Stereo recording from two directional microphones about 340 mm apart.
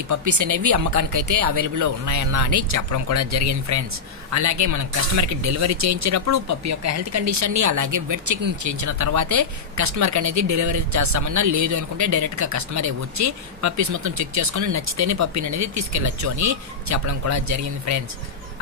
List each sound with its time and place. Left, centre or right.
0.1 s speech: right